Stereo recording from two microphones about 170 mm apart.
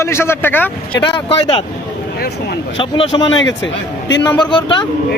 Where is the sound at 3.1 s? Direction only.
30° left (ahead or behind).